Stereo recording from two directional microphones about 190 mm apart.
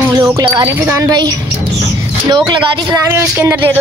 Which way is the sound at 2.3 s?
20° right (ahead or behind).